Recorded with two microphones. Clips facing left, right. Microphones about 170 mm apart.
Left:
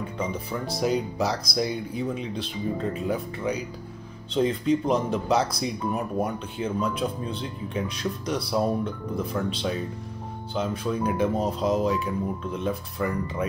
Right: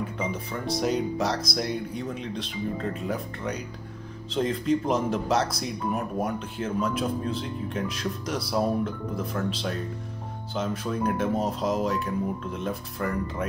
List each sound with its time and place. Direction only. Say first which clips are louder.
0.0 s speech: even; centre (ahead or behind)